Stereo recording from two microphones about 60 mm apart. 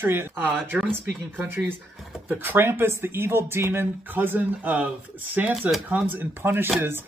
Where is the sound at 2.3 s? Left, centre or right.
Right.